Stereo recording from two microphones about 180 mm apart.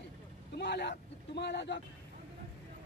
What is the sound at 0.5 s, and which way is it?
Speech, 70° left (ahead or behind).